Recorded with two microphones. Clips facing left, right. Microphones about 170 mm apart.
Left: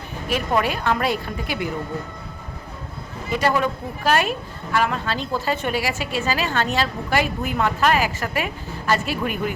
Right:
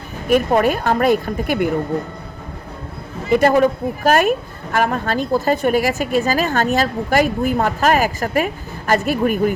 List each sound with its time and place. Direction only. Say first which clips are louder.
0.3 s a woman's voice: right 7 dB; 50° right (ahead or behind)
3.2 s a woman's voice: right 8 dB; 50° right (ahead or behind)